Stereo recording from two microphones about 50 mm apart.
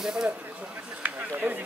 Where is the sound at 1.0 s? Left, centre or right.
Right.